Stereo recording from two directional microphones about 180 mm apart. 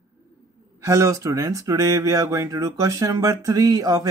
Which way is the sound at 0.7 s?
15° right (ahead or behind).